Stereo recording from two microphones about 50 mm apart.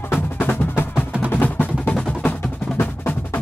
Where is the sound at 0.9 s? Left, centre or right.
Right.